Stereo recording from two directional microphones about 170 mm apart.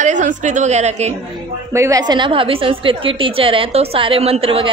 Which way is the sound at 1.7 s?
20° right (ahead or behind).